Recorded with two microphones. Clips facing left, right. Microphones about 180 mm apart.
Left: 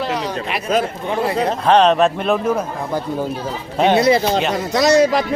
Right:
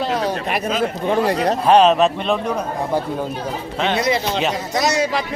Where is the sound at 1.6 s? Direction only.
5° right (ahead or behind).